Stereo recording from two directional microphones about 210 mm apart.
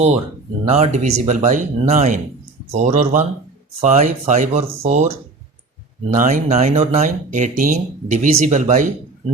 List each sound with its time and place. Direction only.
0.7 s speech: 30° right (ahead or behind)
6.1 s speech: 35° right (ahead or behind)